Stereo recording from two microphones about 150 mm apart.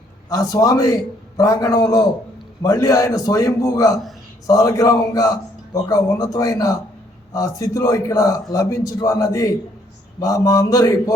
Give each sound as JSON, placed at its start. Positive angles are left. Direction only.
{"t": 0.3, "sound": "a man's voice", "side_deg": 25}